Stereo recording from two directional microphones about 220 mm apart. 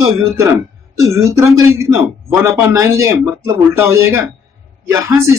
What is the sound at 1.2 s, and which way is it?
Speech, 10° right (ahead or behind).